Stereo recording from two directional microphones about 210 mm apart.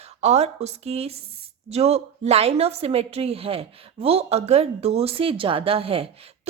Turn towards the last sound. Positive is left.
turn(degrees=-25)  # may be behind; listen again after turning